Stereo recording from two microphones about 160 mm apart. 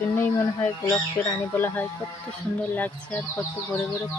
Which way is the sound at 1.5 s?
15° left (ahead or behind).